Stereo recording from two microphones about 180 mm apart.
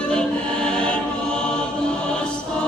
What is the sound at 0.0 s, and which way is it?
Choir, 5° left (ahead or behind).